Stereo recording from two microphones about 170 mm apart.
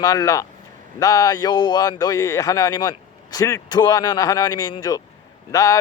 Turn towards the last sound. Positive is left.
turn(degrees=20)  # may be behind; listen again after turning